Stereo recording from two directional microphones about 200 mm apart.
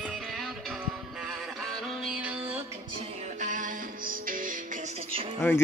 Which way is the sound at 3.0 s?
40° right (ahead or behind).